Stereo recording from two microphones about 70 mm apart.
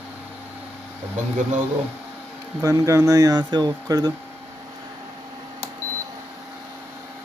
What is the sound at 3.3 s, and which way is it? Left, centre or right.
Speech, right.